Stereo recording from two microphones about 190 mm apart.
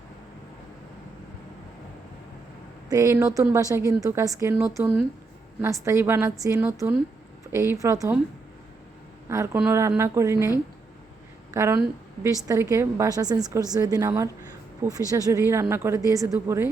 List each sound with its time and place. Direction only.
2.9 s a woman's voice: 15° right (ahead or behind)
9.3 s a woman's voice: 15° right (ahead or behind)
11.5 s a woman's voice: 15° right (ahead or behind)